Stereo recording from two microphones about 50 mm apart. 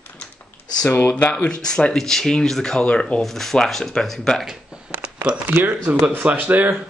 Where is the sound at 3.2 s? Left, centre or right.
Centre.